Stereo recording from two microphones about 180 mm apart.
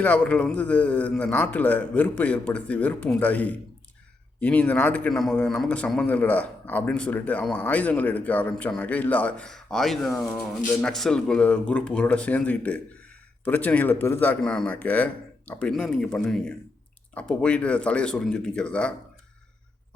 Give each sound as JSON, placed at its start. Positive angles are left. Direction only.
{"t": 0.0, "sound": "a man's voice", "side_deg": 5}